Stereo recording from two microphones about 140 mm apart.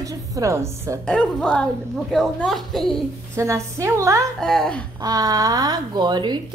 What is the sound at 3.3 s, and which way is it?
Speech, 20° right (ahead or behind).